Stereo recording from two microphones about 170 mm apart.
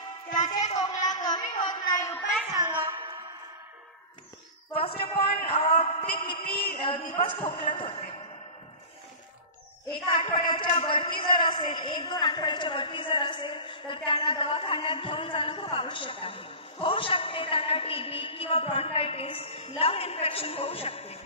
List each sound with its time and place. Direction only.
0.8 s a man's voice: 25° left (ahead or behind)
2.5 s music: 20° right (ahead or behind)
4.7 s a man's voice: 35° left (ahead or behind)
6.3 s a sound: 65° left (ahead or behind)
7.2 s a man's voice: 30° left (ahead or behind)
10.1 s a man's voice: 30° left (ahead or behind)